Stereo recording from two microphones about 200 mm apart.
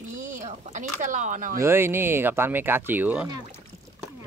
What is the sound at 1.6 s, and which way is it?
Speech, 10° right (ahead or behind).